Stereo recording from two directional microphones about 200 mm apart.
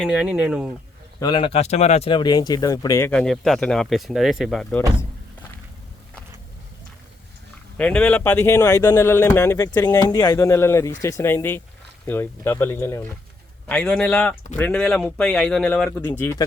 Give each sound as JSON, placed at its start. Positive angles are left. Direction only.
{"t": 0.0, "sound": "speech", "side_deg": -5}
{"t": 1.2, "sound": "speech", "side_deg": 25}
{"t": 3.1, "sound": "speech", "side_deg": 5}
{"t": 7.8, "sound": "speech", "side_deg": 5}